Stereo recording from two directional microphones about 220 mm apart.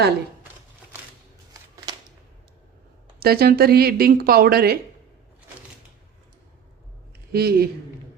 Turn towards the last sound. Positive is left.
turn(degrees=-45)  # may be behind; listen again after turning